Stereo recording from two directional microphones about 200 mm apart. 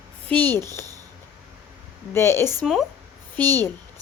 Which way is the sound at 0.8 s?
15° right (ahead or behind).